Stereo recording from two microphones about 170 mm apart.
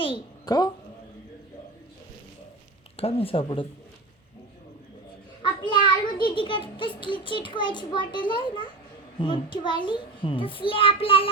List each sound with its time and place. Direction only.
0.0 s a child's voice: 25° left (ahead or behind)
3.0 s a child's voice: 35° left (ahead or behind)
5.4 s a child's voice: 30° left (ahead or behind)